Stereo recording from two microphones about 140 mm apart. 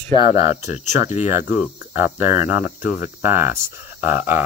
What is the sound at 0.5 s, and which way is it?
Speech, 55° left (ahead or behind).